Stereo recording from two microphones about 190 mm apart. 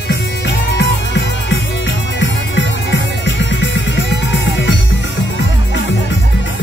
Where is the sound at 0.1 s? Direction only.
65° left (ahead or behind).